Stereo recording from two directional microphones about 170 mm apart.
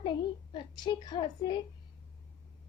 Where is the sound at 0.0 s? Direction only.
25° left (ahead or behind).